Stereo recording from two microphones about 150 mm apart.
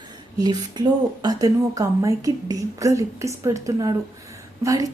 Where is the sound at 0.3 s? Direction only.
25° right (ahead or behind).